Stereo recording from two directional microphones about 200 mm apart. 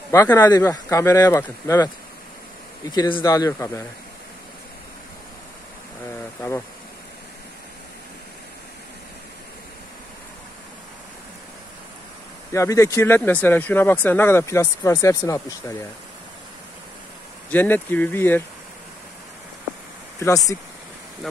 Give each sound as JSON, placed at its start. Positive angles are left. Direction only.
{"t": 0.1, "sound": "speech", "side_deg": 15}
{"t": 2.9, "sound": "speech", "side_deg": 25}
{"t": 12.5, "sound": "speech", "side_deg": 15}
{"t": 17.5, "sound": "speech", "side_deg": 10}
{"t": 20.2, "sound": "speech", "side_deg": 15}